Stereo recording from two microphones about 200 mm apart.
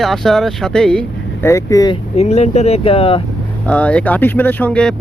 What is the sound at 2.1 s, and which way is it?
Speech, 35° left (ahead or behind).